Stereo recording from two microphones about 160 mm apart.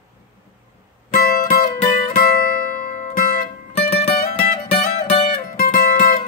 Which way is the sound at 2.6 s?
60° left (ahead or behind).